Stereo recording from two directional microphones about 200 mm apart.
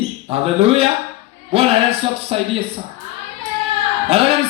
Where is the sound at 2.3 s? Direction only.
30° right (ahead or behind).